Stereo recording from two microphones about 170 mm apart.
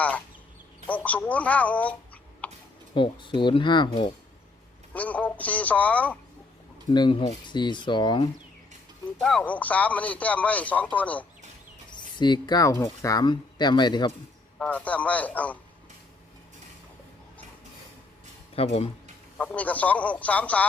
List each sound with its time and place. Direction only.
0.9 s a man's voice: 10° left (ahead or behind)
2.4 s tick: 10° left (ahead or behind)
2.9 s speech: 30° left (ahead or behind)
4.9 s a man's voice: 10° left (ahead or behind)
6.9 s speech: 30° left (ahead or behind)
9.2 s a man's voice: 5° left (ahead or behind)
11.9 s speech: 25° left (ahead or behind)
14.6 s a man's voice: 10° left (ahead or behind)
18.5 s speech: 35° left (ahead or behind)
19.4 s a man's voice: 10° left (ahead or behind)